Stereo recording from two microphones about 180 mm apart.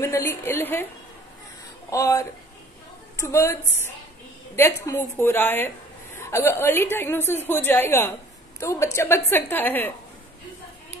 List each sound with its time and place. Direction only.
0.0 s a woman's voice: 15° left (ahead or behind)
1.9 s a woman's voice: 15° left (ahead or behind)